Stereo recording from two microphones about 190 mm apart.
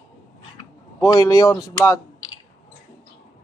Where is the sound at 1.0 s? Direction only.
15° left (ahead or behind).